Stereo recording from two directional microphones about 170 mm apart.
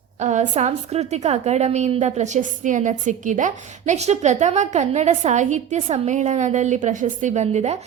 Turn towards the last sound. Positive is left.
turn(degrees=-40)  # may be behind; listen again after turning